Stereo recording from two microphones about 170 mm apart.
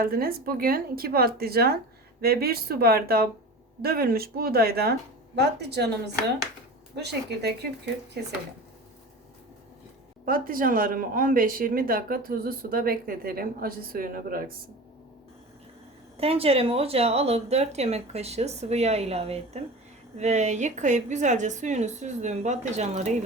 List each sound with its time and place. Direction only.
0.0 s speech: 60° right (ahead or behind); by 5.9 s 75° right (ahead or behind)
6.9 s speech: 80° right
10.2 s speech: 55° right (ahead or behind)
16.1 s a woman's voice: 35° right (ahead or behind)